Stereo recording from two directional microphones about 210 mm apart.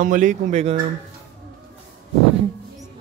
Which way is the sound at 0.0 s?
40° right (ahead or behind).